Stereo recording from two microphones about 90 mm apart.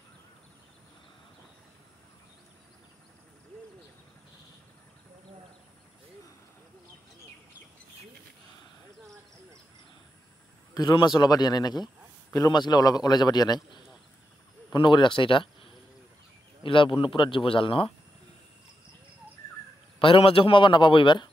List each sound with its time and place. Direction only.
10.7 s a man's voice: 50° left (ahead or behind); by 17.9 s 75° left (ahead or behind)
20.0 s speech: 85° left; by 21.3 s 60° left (ahead or behind)